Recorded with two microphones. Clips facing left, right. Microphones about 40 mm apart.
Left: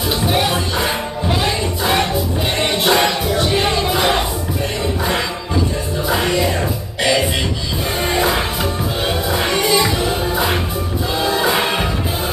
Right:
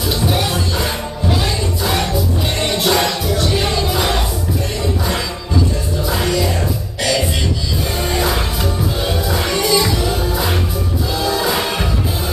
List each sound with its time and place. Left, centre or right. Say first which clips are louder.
0.2 s music: left 3 dB; centre
6.0 s music: left 2 dB; left